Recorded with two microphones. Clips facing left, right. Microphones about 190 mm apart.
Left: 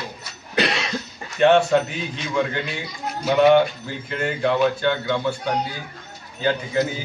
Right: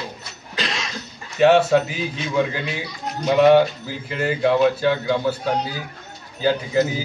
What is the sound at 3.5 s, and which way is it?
A man's voice, 5° right (ahead or behind).